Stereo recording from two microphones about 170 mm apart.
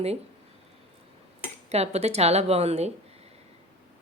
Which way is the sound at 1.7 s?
40° right (ahead or behind).